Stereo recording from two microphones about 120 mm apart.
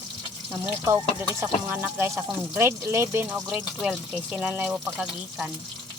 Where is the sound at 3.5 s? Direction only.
5° right (ahead or behind).